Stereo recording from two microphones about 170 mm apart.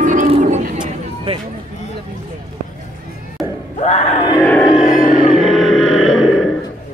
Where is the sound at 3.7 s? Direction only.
40° left (ahead or behind).